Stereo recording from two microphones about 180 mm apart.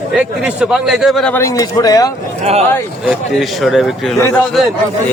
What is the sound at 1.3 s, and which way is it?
Speech, 15° left (ahead or behind).